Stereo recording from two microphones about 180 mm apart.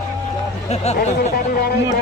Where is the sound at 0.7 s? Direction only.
40° left (ahead or behind).